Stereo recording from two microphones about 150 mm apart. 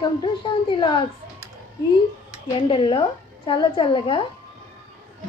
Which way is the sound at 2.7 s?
35° left (ahead or behind).